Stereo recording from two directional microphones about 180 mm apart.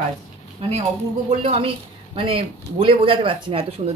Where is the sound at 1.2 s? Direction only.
35° right (ahead or behind).